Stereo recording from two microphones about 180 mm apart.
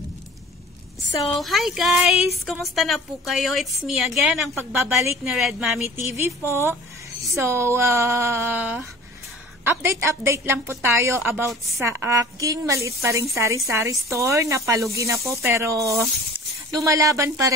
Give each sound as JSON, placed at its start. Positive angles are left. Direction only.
{"t": 1.4, "sound": "a woman's voice", "side_deg": 0}
{"t": 6.5, "sound": "a woman's voice", "side_deg": -15}